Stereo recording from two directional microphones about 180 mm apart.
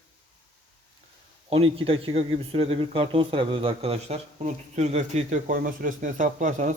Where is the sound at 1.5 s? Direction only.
30° right (ahead or behind).